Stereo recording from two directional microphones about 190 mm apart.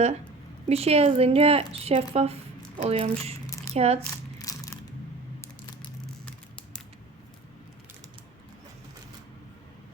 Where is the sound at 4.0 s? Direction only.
20° left (ahead or behind).